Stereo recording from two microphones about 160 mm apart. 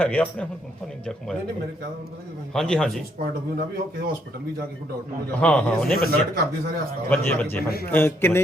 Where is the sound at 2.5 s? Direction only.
5° left (ahead or behind).